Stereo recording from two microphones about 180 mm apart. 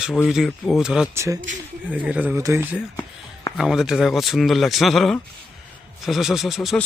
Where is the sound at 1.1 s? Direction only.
15° right (ahead or behind).